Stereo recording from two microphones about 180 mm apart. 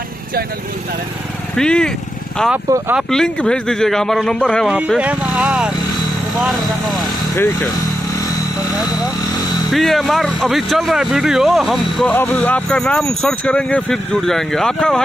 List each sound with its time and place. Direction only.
1.6 s speech: 5° left (ahead or behind)
2.5 s speech: 10° right (ahead or behind)
3.1 s speech: 5° left (ahead or behind)
4.7 s speech: 5° right (ahead or behind)
8.6 s vehicle: 20° left (ahead or behind)
9.7 s speech: centre (ahead or behind)